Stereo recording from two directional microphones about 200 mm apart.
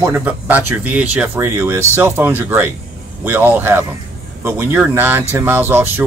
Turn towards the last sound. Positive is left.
turn(degrees=-10)  # may be behind; listen again after turning